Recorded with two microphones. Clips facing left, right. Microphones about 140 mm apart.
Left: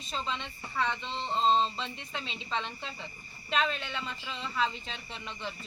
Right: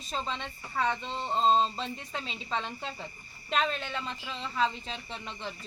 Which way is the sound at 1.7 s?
40° right (ahead or behind).